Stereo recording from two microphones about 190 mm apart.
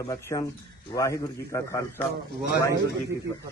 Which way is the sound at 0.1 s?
15° left (ahead or behind).